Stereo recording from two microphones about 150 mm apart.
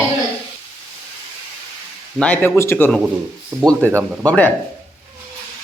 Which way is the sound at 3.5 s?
25° right (ahead or behind).